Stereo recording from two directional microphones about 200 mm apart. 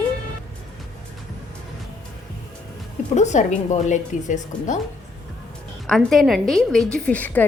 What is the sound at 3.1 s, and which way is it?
Speech, 35° left (ahead or behind).